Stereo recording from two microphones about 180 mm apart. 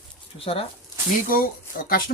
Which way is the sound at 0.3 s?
30° left (ahead or behind).